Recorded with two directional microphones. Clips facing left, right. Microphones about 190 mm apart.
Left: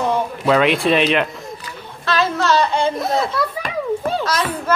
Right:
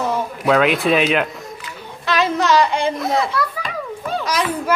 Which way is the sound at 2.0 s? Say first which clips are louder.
Even; 15° right (ahead or behind).